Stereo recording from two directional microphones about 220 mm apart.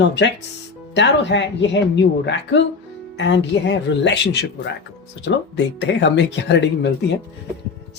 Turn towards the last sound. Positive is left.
turn(degrees=50)  # may be behind; listen again after turning